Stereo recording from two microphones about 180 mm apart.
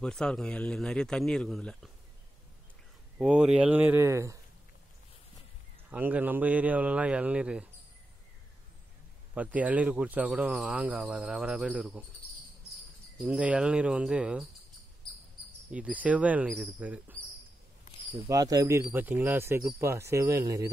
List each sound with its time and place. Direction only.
0.0 s speech: 5° left (ahead or behind)
3.2 s speech: 5° right (ahead or behind)
5.9 s speech: 10° right (ahead or behind)
9.3 s speech: 10° right (ahead or behind)
13.2 s speech: 5° right (ahead or behind)
15.7 s speech: 10° right (ahead or behind)
18.3 s speech: 20° right (ahead or behind)